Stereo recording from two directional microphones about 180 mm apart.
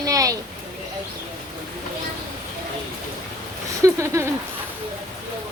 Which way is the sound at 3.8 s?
15° right (ahead or behind).